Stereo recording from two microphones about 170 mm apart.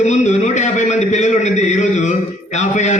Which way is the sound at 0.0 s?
45° left (ahead or behind).